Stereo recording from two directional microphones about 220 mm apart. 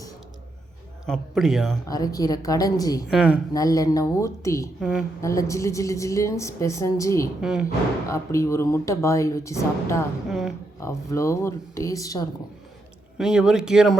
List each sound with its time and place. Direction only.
1.0 s speech: centre (ahead or behind)
1.9 s a woman's voice: 15° left (ahead or behind)
3.1 s speech: 5° right (ahead or behind)
3.5 s a woman's voice: 15° left (ahead or behind)
4.8 s speech: centre (ahead or behind)
5.2 s a woman's voice: 15° left (ahead or behind)
7.4 s speech: 5° right (ahead or behind)
8.0 s a woman's voice: 15° left (ahead or behind)
10.2 s speech: centre (ahead or behind)
10.8 s a woman's voice: 15° left (ahead or behind)
13.1 s speech: 5° right (ahead or behind)